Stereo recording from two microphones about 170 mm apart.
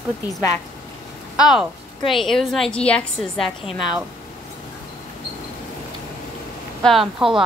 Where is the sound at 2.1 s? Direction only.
Centre (ahead or behind).